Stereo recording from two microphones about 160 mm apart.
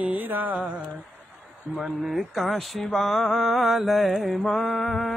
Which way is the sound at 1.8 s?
5° right (ahead or behind).